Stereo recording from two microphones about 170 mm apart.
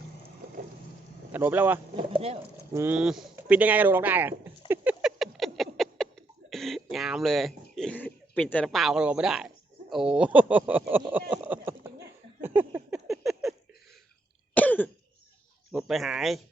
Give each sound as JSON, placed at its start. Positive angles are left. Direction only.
{"t": 1.3, "sound": "speech", "side_deg": -10}
{"t": 2.1, "sound": "speech", "side_deg": -35}
{"t": 2.7, "sound": "speech", "side_deg": -10}
{"t": 4.7, "sound": "a sound", "side_deg": -10}
{"t": 6.5, "sound": "cough", "side_deg": 0}
{"t": 6.9, "sound": "speech", "side_deg": 0}
{"t": 11.3, "sound": "a sound", "side_deg": -10}
{"t": 14.5, "sound": "cough", "side_deg": 10}
{"t": 15.7, "sound": "speech", "side_deg": 0}